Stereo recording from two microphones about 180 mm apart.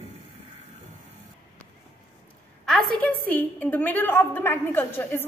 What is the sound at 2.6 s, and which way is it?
A woman's voice, centre (ahead or behind).